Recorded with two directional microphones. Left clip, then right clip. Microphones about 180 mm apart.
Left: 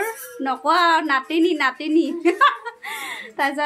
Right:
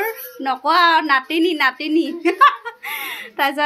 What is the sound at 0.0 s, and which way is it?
A woman's voice, centre (ahead or behind).